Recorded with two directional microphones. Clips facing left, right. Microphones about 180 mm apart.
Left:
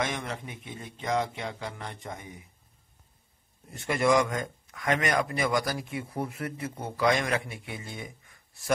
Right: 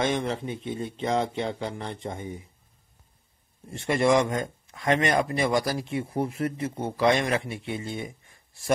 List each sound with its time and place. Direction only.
0.0 s speech: 30° right (ahead or behind)
3.7 s speech: 30° right (ahead or behind)